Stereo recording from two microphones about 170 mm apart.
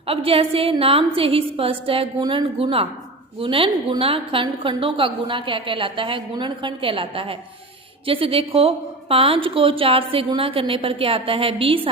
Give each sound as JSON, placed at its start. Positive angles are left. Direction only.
{"t": 0.1, "sound": "a woman's voice", "side_deg": -35}